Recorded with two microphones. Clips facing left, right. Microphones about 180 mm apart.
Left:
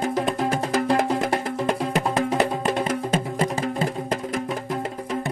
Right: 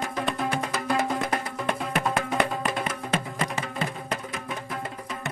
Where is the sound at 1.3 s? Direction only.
25° left (ahead or behind).